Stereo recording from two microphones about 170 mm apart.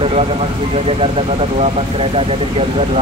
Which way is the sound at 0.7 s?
35° right (ahead or behind).